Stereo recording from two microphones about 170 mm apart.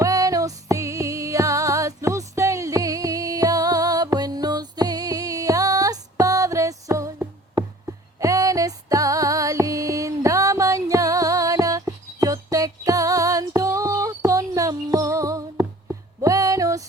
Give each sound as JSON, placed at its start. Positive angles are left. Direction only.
{"t": 0.0, "sound": "music", "side_deg": -20}
{"t": 8.2, "sound": "music", "side_deg": -20}